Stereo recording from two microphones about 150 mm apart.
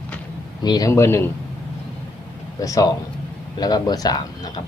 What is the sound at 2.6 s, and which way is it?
Speech, 25° left (ahead or behind).